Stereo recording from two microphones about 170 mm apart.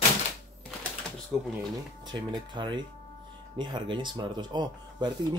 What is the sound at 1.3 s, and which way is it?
Speech, centre (ahead or behind).